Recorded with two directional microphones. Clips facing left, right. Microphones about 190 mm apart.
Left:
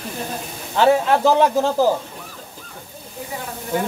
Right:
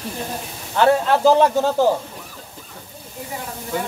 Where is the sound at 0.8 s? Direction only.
5° left (ahead or behind).